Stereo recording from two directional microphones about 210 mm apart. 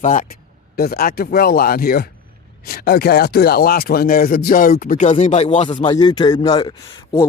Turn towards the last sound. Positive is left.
turn(degrees=15)  # may be behind; listen again after turning